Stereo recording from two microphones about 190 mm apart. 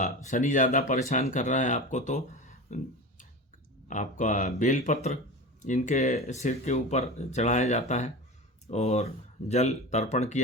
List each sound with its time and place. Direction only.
0.0 s speech: 40° left (ahead or behind)